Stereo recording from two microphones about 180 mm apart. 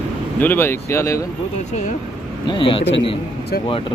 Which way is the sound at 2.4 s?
30° left (ahead or behind).